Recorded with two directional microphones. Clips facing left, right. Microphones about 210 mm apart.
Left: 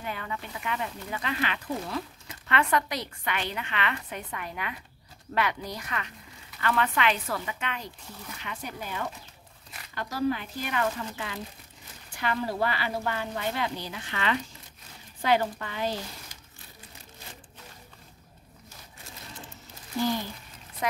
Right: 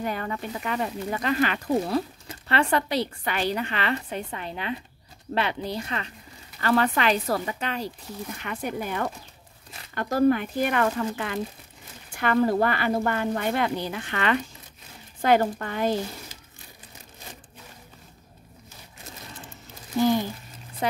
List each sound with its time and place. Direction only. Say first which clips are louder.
0.0 s speech: right 6 dB; 45° right (ahead or behind)
8.4 s a woman's voice: right 7 dB; 55° right (ahead or behind)